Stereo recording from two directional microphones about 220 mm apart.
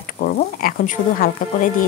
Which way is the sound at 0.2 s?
40° left (ahead or behind).